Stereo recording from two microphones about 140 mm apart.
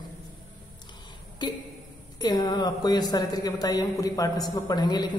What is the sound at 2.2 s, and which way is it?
A woman's voice, 30° left (ahead or behind).